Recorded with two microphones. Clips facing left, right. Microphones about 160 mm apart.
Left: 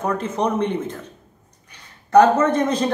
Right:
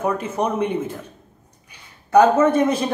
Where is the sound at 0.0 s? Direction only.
10° right (ahead or behind).